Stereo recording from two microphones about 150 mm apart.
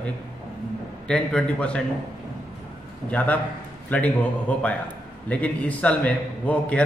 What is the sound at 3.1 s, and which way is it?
A man's voice, 10° left (ahead or behind).